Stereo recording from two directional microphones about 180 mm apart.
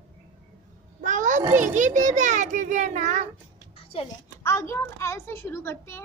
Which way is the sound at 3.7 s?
30° left (ahead or behind).